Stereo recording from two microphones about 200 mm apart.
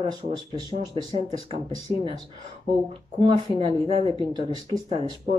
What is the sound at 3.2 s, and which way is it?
Speech, 25° right (ahead or behind).